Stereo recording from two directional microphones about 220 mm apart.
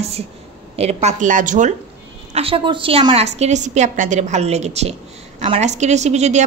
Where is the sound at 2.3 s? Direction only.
25° right (ahead or behind).